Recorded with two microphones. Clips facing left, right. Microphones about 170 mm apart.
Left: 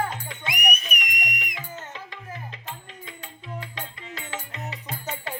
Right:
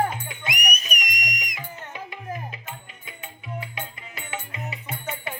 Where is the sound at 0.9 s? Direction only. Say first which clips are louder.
Right 1 dB; 20° right (ahead or behind).